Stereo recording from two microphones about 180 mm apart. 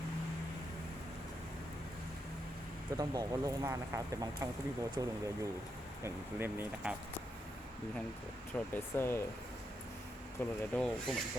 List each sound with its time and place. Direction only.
3.0 s speech: 20° right (ahead or behind)
8.5 s speech: 10° left (ahead or behind)
10.4 s speech: 10° left (ahead or behind)